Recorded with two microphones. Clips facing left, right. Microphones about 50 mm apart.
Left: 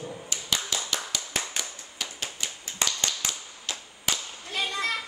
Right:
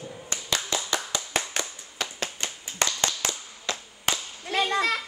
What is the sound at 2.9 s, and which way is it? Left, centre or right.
Tap, right.